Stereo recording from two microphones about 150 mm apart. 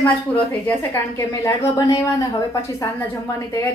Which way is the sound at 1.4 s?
20° left (ahead or behind).